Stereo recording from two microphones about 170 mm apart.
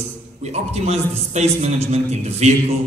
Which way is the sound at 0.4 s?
40° right (ahead or behind).